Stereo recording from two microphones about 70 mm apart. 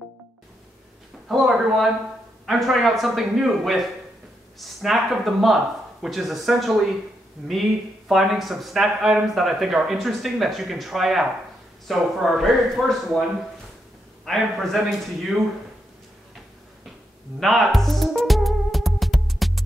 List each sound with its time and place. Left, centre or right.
1.3 s speech: centre
8.1 s speech: centre
14.2 s speech: centre
17.4 s music: centre